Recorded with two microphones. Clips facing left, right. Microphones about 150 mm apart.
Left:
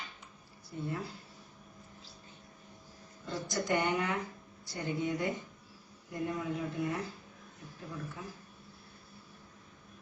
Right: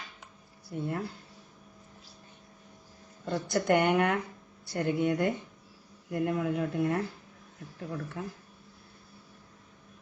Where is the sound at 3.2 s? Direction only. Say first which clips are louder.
Right 7 dB; 65° right (ahead or behind).